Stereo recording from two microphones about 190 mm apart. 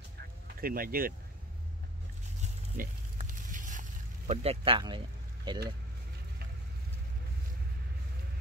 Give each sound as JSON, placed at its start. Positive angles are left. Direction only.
{"t": 0.6, "sound": "speech", "side_deg": -50}
{"t": 2.4, "sound": "a sound", "side_deg": -40}
{"t": 4.3, "sound": "speech", "side_deg": -30}